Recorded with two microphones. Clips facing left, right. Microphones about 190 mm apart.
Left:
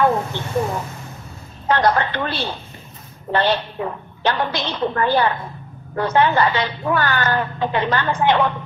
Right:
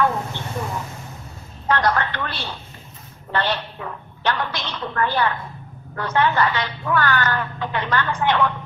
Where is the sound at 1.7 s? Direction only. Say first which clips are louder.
Left 3 dB; 25° left (ahead or behind).